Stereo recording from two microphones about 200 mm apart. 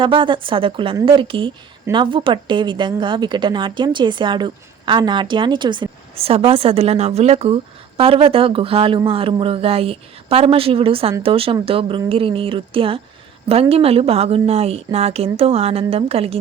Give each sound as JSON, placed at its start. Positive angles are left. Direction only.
{"t": 0.0, "sound": "a woman's voice", "side_deg": -25}